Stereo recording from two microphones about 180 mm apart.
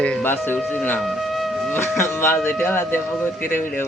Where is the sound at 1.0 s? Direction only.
Centre (ahead or behind).